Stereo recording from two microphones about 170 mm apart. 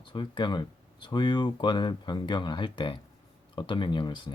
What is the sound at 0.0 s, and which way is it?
Speech, 30° left (ahead or behind).